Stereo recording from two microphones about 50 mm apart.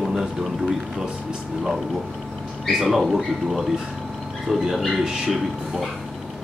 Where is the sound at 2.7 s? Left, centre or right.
Centre.